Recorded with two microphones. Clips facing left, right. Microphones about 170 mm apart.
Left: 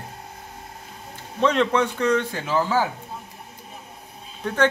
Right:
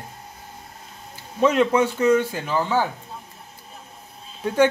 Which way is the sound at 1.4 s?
10° right (ahead or behind).